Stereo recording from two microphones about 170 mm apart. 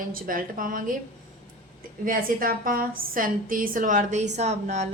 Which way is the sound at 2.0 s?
55° right (ahead or behind).